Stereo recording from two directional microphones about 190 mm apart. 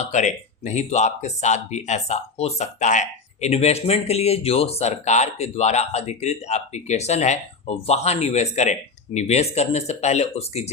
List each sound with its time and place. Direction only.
0.0 s speech: 40° left (ahead or behind)